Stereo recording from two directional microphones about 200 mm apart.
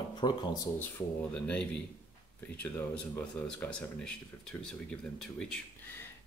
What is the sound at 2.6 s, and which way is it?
Speech, 10° left (ahead or behind).